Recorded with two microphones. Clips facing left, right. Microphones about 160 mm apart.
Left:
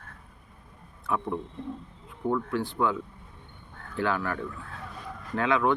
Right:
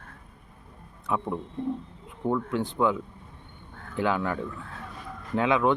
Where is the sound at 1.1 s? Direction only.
20° right (ahead or behind).